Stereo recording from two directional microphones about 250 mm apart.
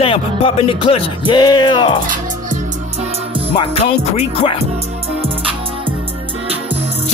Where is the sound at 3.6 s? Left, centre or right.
Left.